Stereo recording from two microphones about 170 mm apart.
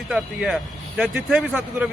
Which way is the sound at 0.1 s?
5° right (ahead or behind).